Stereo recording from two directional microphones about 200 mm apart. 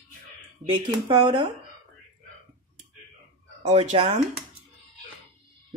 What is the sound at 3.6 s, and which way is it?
Speech, 30° right (ahead or behind).